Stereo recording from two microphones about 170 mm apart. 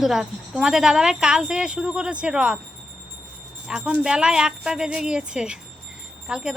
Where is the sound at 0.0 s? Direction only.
5° right (ahead or behind).